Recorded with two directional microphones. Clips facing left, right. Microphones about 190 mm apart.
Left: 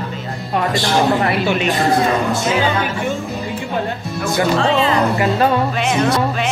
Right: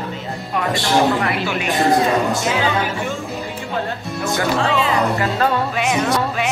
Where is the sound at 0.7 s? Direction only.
20° right (ahead or behind).